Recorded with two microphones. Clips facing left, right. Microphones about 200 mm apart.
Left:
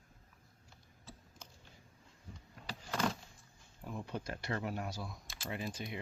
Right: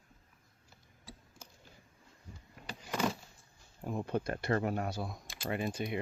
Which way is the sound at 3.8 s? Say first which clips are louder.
Right 7 dB; 50° right (ahead or behind).